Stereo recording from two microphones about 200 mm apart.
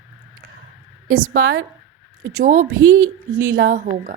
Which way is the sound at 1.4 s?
90° right.